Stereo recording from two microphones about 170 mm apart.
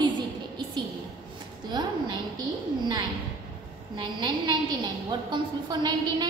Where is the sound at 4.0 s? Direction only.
25° right (ahead or behind).